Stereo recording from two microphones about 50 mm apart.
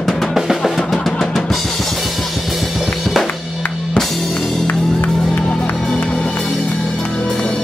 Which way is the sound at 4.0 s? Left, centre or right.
Centre.